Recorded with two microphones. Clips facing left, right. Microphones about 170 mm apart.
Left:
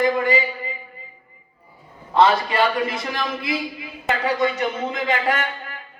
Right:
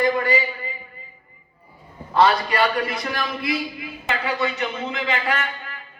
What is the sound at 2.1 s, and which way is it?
Speech, 25° left (ahead or behind).